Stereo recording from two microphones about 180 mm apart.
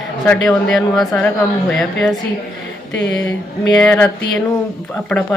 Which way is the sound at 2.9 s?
70° left (ahead or behind).